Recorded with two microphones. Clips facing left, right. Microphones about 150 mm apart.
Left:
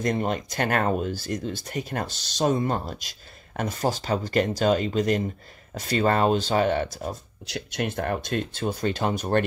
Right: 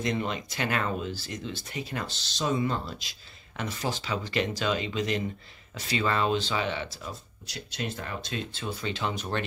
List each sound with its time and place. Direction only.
0.0 s speech: 45° left (ahead or behind)